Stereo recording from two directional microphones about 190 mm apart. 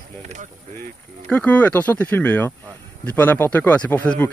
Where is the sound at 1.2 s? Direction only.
10° left (ahead or behind).